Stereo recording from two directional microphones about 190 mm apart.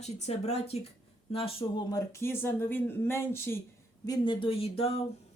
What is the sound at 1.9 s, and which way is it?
Speech, 15° left (ahead or behind).